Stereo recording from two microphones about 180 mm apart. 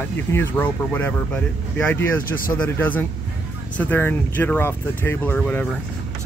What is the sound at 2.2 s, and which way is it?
Speech, 50° left (ahead or behind).